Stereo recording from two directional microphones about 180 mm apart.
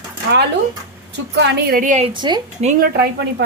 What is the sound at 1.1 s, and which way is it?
Speech, 70° right (ahead or behind).